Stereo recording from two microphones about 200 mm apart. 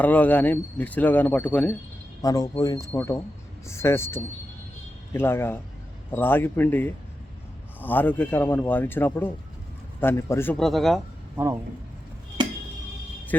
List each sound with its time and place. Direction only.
0.0 s speech: 10° left (ahead or behind)
2.2 s speech: 20° left (ahead or behind); by 11.0 s centre (ahead or behind)